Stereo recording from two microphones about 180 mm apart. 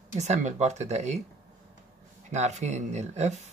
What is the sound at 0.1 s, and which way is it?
Speech, 40° right (ahead or behind).